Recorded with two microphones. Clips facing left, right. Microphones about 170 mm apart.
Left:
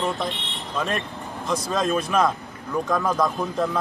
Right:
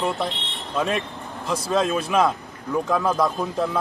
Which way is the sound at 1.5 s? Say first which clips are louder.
Right 1 dB; 5° right (ahead or behind).